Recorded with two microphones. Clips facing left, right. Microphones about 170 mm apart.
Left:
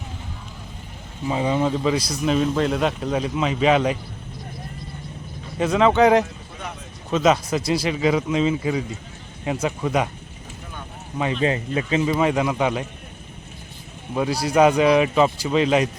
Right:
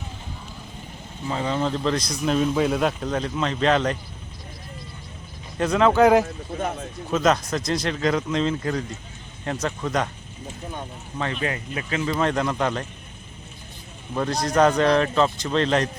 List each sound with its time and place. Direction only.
1.3 s speech: 15° left (ahead or behind)
5.5 s speech: centre (ahead or behind)
6.2 s a sound: 50° right (ahead or behind)
7.1 s speech: centre (ahead or behind)
11.3 s speech: 25° left (ahead or behind); by 12.9 s 10° left (ahead or behind)
14.2 s speech: 10° left (ahead or behind)